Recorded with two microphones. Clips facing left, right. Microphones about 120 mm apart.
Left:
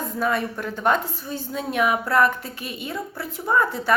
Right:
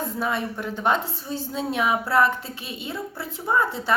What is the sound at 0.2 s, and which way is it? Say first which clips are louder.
A woman's voice: left 5 dB; 20° right (ahead or behind).